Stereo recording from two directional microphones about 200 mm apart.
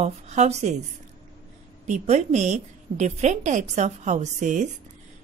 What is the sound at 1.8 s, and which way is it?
A woman's voice, 35° right (ahead or behind).